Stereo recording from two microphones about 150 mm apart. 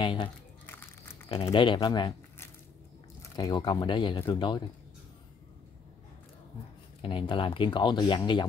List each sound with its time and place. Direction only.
0.0 s speech: 35° left (ahead or behind)
0.7 s crumpling: 15° left (ahead or behind)
1.5 s speech: 30° left (ahead or behind)
3.2 s speech: 25° left (ahead or behind)
7.0 s speech: 35° left (ahead or behind)